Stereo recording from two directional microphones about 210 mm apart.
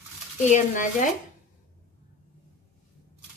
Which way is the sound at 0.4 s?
35° left (ahead or behind).